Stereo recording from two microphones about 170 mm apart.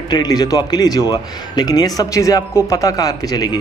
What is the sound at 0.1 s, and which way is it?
Speech, 25° left (ahead or behind).